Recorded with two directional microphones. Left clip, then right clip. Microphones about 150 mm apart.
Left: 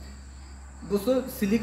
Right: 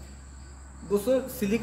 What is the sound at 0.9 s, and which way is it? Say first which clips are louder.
Speech: right 1 dB; 20° right (ahead or behind).